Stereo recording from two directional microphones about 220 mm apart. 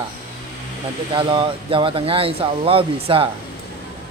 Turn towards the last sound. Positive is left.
turn(degrees=-25)  # may be behind; listen again after turning